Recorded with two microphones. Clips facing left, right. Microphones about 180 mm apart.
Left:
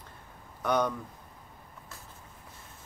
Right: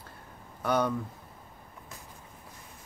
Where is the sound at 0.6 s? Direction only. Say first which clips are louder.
Even; 5° right (ahead or behind).